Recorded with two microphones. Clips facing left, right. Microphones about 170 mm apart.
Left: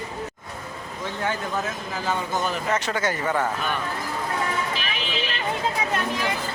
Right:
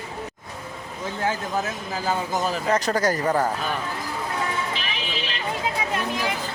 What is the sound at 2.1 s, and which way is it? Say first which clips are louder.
Speech: right 1 dB; 35° right (ahead or behind).